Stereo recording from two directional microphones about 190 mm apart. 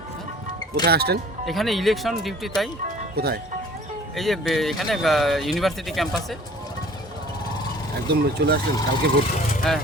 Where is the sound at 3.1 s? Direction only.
55° right (ahead or behind).